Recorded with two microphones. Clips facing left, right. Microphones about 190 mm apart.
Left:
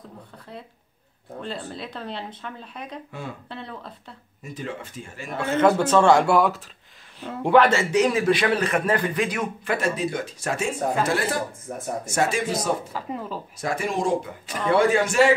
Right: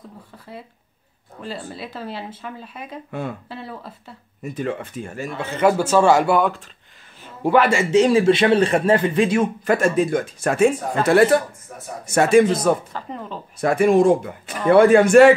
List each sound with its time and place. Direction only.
1.4 s speech: 5° right (ahead or behind)
4.4 s a man's voice: 60° right (ahead or behind)
5.6 s speech: 10° right (ahead or behind)
7.9 s speech: 30° right (ahead or behind)
9.7 s speech: 50° right (ahead or behind)
11.7 s speech: 45° left (ahead or behind)
12.1 s a man's voice: 60° right (ahead or behind)
12.9 s speech: 5° left (ahead or behind)
13.6 s a man's voice: 60° right (ahead or behind)